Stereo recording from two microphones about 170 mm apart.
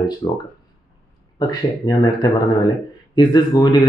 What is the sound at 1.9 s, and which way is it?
Speech, 25° left (ahead or behind).